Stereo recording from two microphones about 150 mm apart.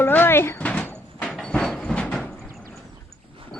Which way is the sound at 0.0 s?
15° left (ahead or behind).